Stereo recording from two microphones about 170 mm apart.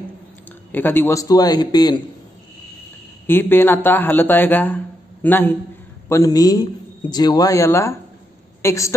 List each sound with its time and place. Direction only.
0.5 s a man's voice: 10° left (ahead or behind)
3.3 s a man's voice: 10° left (ahead or behind)